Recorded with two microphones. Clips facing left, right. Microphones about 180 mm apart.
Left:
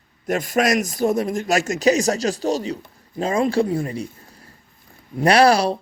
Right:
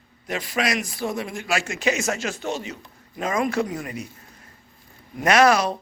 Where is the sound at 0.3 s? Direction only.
45° left (ahead or behind).